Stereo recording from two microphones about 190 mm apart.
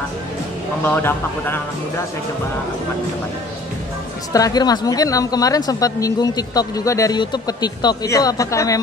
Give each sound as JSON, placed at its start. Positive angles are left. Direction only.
{"t": 0.8, "sound": "a man's voice", "side_deg": 10}
{"t": 4.3, "sound": "speech", "side_deg": 20}